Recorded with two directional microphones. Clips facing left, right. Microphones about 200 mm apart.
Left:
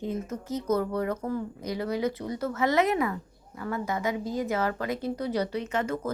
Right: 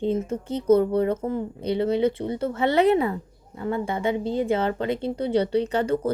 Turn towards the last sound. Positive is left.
turn(degrees=-30)  # may be behind; listen again after turning